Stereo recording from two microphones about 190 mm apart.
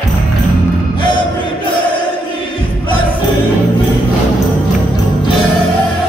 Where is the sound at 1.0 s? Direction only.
25° left (ahead or behind).